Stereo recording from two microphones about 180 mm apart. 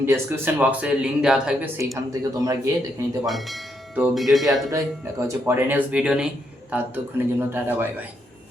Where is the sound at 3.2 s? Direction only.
Centre (ahead or behind).